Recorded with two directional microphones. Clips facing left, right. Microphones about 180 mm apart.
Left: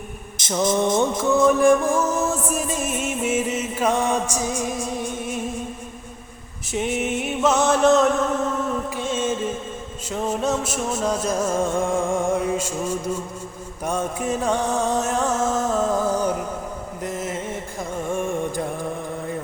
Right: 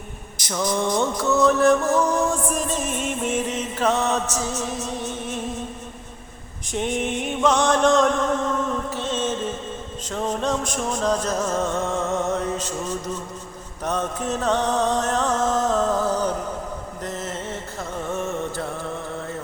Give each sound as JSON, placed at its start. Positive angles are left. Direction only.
{"t": 0.3, "sound": "music", "side_deg": 25}
{"t": 1.5, "sound": "music", "side_deg": 10}
{"t": 6.7, "sound": "chant", "side_deg": 5}
{"t": 9.0, "sound": "music", "side_deg": 10}